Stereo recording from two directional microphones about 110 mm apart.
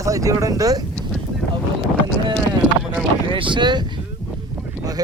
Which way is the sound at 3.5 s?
45° right (ahead or behind).